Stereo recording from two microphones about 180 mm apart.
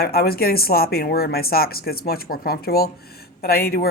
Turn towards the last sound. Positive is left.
turn(degrees=55)  # may be behind; listen again after turning